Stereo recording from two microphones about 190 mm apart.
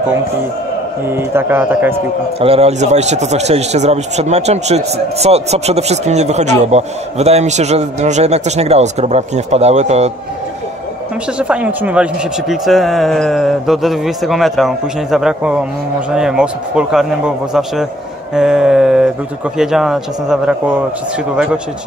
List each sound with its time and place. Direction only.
1.0 s a man's voice: 10° right (ahead or behind)
2.4 s speech: 30° right (ahead or behind)
11.3 s speech: 5° right (ahead or behind)